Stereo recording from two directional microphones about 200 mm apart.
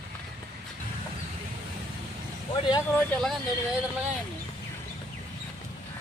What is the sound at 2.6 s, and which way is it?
Speech, 25° left (ahead or behind).